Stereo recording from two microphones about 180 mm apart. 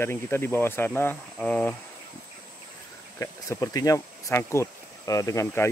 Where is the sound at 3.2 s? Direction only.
20° left (ahead or behind).